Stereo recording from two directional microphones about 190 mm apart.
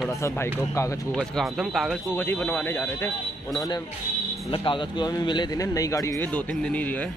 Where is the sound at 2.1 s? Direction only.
10° left (ahead or behind).